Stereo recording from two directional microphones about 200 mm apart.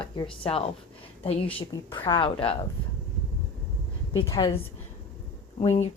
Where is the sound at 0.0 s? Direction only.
25° left (ahead or behind).